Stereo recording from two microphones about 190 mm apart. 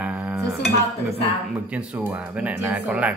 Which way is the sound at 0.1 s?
15° right (ahead or behind).